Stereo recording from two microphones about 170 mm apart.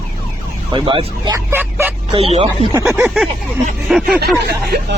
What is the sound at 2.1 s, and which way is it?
Speech, 35° right (ahead or behind).